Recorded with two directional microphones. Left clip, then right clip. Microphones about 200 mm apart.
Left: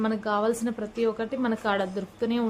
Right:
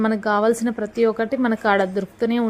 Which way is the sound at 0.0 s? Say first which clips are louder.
Right 7 dB; 30° right (ahead or behind).